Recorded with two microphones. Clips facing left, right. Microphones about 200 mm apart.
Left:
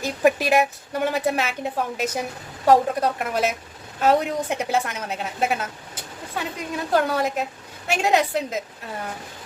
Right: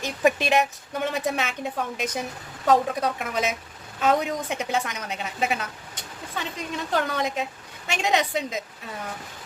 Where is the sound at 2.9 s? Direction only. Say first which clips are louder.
Left 3 dB; 60° left (ahead or behind).